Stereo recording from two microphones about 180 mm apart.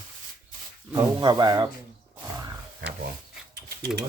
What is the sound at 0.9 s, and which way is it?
Speech, 25° right (ahead or behind).